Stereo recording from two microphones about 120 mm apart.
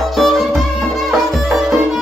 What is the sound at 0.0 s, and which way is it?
Music, centre (ahead or behind).